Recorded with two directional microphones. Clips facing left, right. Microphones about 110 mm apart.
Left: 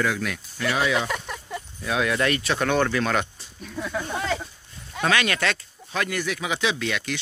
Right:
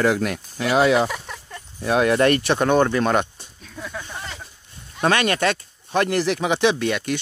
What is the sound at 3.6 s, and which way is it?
Snake, centre (ahead or behind).